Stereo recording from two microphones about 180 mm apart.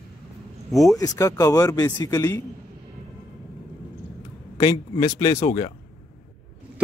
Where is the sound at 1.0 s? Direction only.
20° left (ahead or behind).